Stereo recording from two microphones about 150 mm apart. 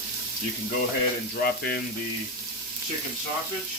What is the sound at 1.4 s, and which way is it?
Speech, 90° left.